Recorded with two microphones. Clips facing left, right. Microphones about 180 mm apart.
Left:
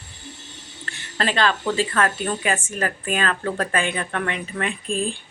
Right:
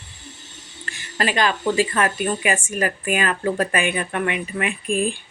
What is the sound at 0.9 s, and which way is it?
Speech, 10° right (ahead or behind).